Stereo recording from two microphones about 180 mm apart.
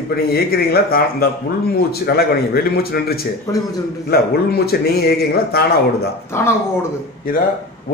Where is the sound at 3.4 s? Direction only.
20° left (ahead or behind).